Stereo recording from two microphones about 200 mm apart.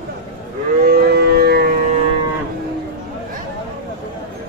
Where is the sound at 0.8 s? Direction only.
50° right (ahead or behind).